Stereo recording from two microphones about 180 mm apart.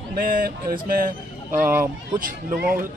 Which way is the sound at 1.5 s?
10° right (ahead or behind).